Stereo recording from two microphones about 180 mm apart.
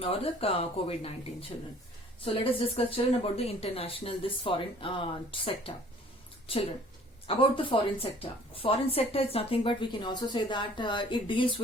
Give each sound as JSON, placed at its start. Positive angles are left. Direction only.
{"t": 0.0, "sound": "a woman's voice", "side_deg": 30}